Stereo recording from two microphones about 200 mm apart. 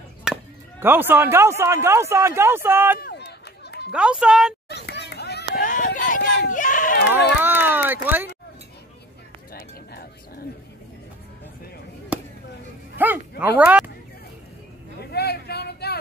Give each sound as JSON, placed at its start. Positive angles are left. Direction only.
{"t": 0.2, "sound": "speech", "side_deg": -5}
{"t": 3.0, "sound": "run", "side_deg": 55}
{"t": 3.9, "sound": "speech", "side_deg": -5}
{"t": 4.6, "sound": "a sound", "side_deg": 55}
{"t": 6.3, "sound": "baby cry", "side_deg": 45}
{"t": 7.3, "sound": "a sound", "side_deg": -10}
{"t": 9.5, "sound": "a sound", "side_deg": 50}
{"t": 12.1, "sound": "chop", "side_deg": -5}
{"t": 12.9, "sound": "speech", "side_deg": -10}
{"t": 15.0, "sound": "vehicle", "side_deg": 55}